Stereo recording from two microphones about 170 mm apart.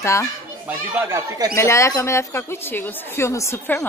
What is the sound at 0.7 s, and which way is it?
Speech, 15° right (ahead or behind).